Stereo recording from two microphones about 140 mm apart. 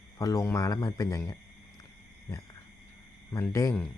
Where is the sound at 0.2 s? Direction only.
25° left (ahead or behind).